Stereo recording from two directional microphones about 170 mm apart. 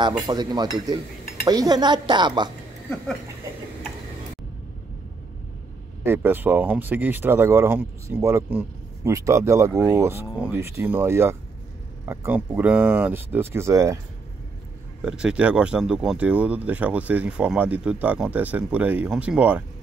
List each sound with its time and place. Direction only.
0.3 s speech: 25° right (ahead or behind)
6.0 s speech: 10° right (ahead or behind)
15.0 s speech: 5° right (ahead or behind)